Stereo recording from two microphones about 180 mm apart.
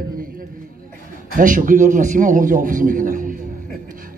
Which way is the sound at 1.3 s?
50° right (ahead or behind).